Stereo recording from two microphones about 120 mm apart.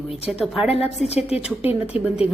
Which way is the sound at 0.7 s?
60° left (ahead or behind).